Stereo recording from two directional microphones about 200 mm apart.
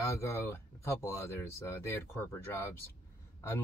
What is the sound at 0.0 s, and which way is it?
Speech, 15° left (ahead or behind).